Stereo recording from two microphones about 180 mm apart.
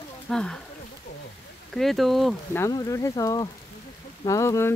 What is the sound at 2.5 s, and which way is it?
Speech, 15° left (ahead or behind).